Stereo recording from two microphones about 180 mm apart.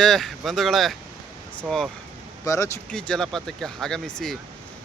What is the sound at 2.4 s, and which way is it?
Speech, 15° left (ahead or behind).